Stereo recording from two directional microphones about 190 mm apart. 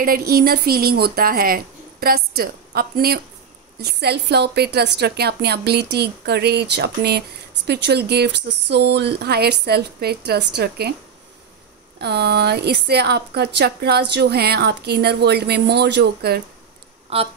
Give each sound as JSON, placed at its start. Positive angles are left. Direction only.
{"t": 0.0, "sound": "a woman's voice", "side_deg": -50}
{"t": 12.0, "sound": "a woman's voice", "side_deg": -60}
{"t": 17.1, "sound": "speech", "side_deg": -30}